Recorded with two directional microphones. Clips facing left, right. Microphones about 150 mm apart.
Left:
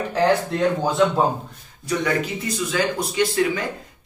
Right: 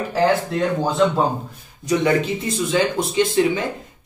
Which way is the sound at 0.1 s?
Centre (ahead or behind).